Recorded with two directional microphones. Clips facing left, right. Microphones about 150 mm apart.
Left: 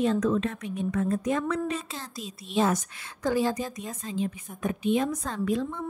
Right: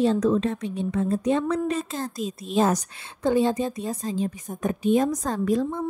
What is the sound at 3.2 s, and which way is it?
A woman's voice, 25° right (ahead or behind).